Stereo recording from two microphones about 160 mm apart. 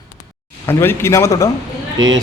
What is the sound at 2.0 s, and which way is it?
Speech, 25° right (ahead or behind).